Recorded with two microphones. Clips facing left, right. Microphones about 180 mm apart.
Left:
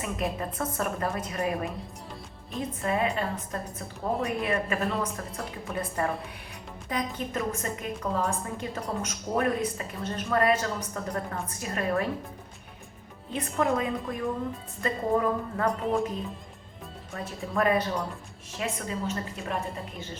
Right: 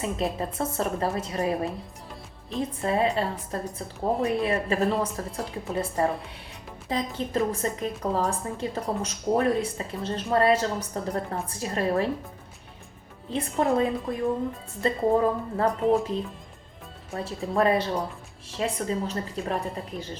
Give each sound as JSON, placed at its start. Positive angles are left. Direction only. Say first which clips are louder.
{"t": 0.0, "sound": "a woman's voice", "louder": "right 3 dB", "side_deg": -30}
{"t": 13.3, "sound": "a woman's voice", "louder": "right 3 dB", "side_deg": -30}
{"t": 17.5, "sound": "a woman's voice", "louder": "right 2 dB", "side_deg": -30}